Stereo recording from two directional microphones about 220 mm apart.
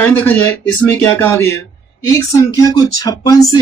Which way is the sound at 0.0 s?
10° left (ahead or behind).